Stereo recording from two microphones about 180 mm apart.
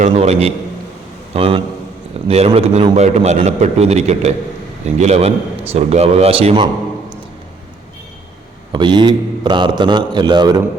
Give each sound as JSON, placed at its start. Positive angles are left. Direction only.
{"t": 0.0, "sound": "a man's voice", "side_deg": -35}
{"t": 8.7, "sound": "a man's voice", "side_deg": -25}